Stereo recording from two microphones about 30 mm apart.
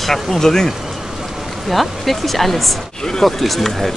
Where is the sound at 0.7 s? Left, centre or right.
Centre.